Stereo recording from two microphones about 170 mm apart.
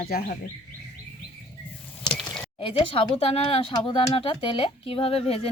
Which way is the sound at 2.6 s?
35° left (ahead or behind).